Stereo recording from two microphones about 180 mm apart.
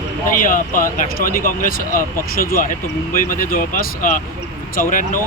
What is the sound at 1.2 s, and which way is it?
Speech, 50° left (ahead or behind).